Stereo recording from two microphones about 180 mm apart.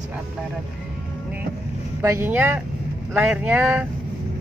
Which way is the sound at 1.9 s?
15° right (ahead or behind).